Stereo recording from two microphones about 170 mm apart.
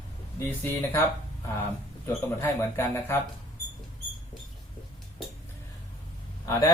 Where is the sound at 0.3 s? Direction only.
15° left (ahead or behind).